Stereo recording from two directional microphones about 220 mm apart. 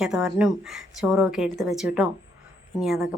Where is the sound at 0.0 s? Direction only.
5° right (ahead or behind).